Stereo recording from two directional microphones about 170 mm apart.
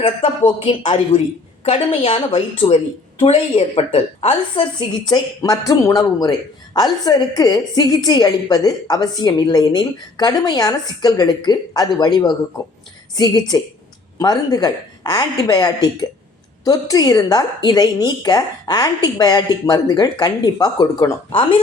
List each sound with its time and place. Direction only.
0.0 s a woman's voice: 30° left (ahead or behind)